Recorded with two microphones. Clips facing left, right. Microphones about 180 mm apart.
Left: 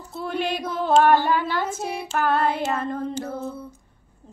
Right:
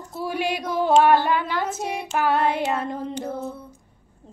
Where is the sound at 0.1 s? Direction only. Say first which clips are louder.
Even; 10° right (ahead or behind).